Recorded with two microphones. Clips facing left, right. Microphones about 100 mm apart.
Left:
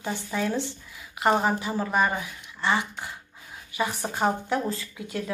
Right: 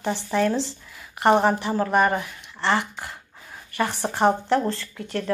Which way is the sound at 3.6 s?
Centre (ahead or behind).